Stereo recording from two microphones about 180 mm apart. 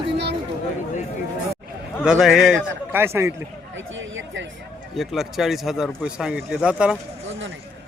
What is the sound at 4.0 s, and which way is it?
Speech, 90° right.